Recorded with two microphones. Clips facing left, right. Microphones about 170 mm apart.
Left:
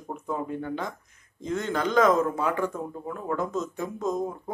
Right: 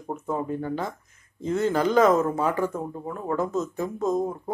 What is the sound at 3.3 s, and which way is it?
Speech, 5° right (ahead or behind).